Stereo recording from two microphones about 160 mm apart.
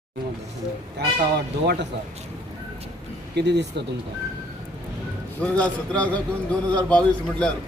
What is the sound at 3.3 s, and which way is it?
Speech, 90° right.